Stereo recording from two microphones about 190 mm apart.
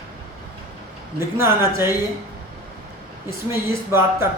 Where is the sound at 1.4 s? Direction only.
15° right (ahead or behind).